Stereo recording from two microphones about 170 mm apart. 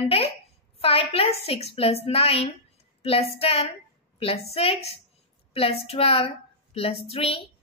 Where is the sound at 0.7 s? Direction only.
35° left (ahead or behind).